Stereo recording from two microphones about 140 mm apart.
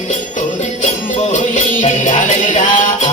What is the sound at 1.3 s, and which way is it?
Music, 60° left (ahead or behind).